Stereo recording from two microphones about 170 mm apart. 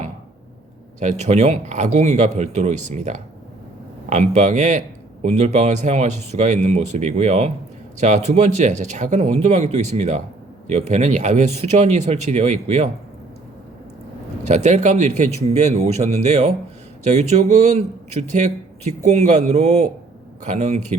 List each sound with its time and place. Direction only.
0.9 s a man's voice: 45° right (ahead or behind)
14.4 s a man's voice: 45° right (ahead or behind)